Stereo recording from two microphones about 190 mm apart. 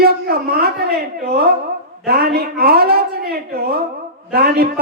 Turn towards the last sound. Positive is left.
turn(degrees=-55)  # may be behind; listen again after turning